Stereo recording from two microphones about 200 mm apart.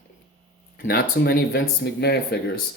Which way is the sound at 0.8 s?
50° left (ahead or behind).